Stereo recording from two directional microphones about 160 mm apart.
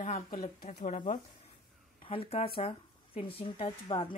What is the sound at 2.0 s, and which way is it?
Speech, 35° left (ahead or behind).